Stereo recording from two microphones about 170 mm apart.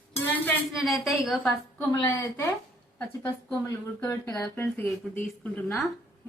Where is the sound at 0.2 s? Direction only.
10° left (ahead or behind).